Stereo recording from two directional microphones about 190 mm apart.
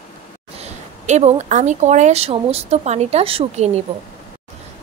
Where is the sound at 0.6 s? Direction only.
35° right (ahead or behind).